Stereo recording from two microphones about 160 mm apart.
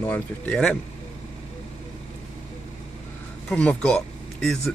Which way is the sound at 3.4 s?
5° left (ahead or behind).